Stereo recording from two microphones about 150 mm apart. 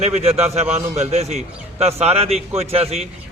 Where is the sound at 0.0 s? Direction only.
45° right (ahead or behind).